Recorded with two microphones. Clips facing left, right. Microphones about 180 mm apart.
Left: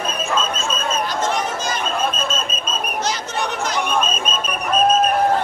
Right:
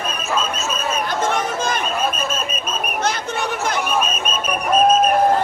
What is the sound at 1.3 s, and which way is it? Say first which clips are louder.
Chatter: right 2 dB; 55° right (ahead or behind).